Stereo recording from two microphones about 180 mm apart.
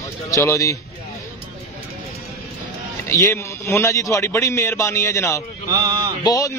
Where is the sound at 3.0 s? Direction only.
15° left (ahead or behind).